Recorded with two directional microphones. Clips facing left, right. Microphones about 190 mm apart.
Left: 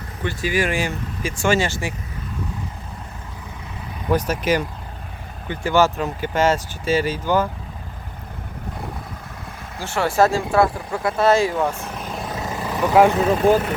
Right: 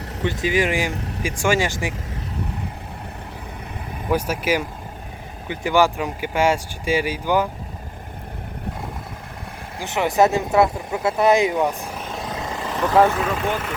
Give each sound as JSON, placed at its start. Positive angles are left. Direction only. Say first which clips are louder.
{"t": 0.3, "sound": "speech", "louder": "right 1 dB", "side_deg": -20}
{"t": 4.1, "sound": "speech", "louder": "left 1 dB", "side_deg": -10}
{"t": 9.7, "sound": "speech", "louder": "even", "side_deg": -15}
{"t": 12.0, "sound": "vehicle", "louder": "left 1 dB", "side_deg": 0}
{"t": 13.1, "sound": "speech", "louder": "left 7 dB", "side_deg": 30}